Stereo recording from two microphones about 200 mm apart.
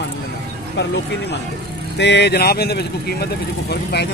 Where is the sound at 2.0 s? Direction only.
60° left (ahead or behind).